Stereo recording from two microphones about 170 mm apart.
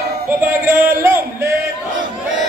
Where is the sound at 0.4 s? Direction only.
15° right (ahead or behind).